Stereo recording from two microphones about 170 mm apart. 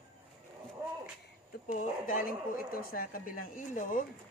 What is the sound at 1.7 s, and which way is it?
Speech, 50° left (ahead or behind).